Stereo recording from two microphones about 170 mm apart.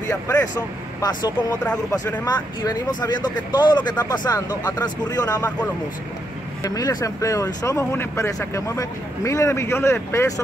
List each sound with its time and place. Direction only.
0.1 s speech: 20° left (ahead or behind)
1.9 s speech: 20° left (ahead or behind)
6.6 s speech: 20° left (ahead or behind)